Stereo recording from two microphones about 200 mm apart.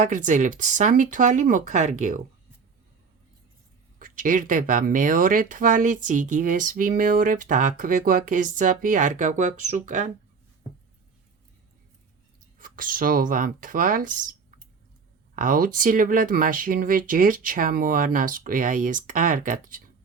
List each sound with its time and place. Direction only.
0.0 s speech: 40° right (ahead or behind)
3.9 s speech: 40° right (ahead or behind)
12.5 s speech: 45° right (ahead or behind)
15.4 s speech: 45° right (ahead or behind)